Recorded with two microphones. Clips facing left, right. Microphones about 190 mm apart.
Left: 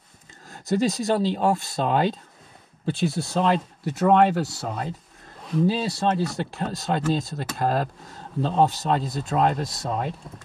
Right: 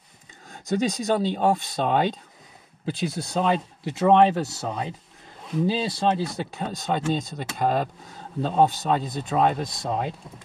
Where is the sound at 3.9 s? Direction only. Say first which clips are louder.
Right 1 dB; 20° right (ahead or behind).